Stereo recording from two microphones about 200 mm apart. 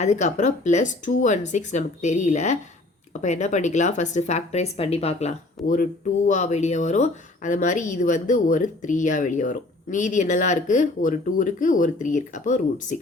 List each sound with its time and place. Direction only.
0.0 s speech: 35° left (ahead or behind)